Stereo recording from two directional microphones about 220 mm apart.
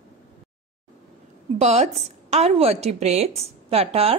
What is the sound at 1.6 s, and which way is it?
A woman's voice, 30° right (ahead or behind).